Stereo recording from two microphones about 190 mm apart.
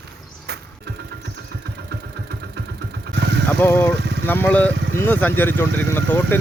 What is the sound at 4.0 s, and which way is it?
Vehicle, 65° right (ahead or behind).